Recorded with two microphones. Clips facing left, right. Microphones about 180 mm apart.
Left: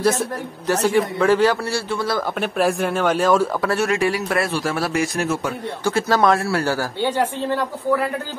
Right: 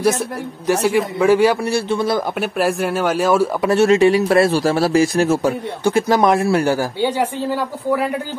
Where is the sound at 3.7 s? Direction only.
25° right (ahead or behind).